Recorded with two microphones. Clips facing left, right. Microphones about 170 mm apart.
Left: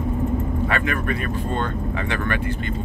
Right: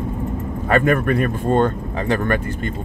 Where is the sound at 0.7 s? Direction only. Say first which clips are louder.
Right 12 dB; 45° right (ahead or behind).